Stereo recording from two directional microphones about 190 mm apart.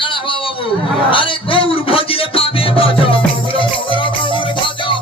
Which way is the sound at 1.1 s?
25° left (ahead or behind).